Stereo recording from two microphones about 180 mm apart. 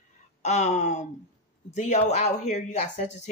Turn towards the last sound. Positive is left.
turn(degrees=40)  # may be behind; listen again after turning